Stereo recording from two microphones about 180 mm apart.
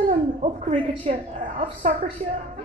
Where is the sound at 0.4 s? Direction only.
35° right (ahead or behind).